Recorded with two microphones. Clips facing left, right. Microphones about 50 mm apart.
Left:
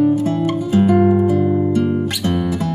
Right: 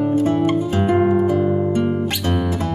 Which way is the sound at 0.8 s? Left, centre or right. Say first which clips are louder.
Left 2 dB; centre.